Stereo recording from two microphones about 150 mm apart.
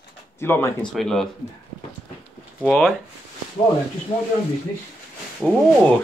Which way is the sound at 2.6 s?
5° left (ahead or behind).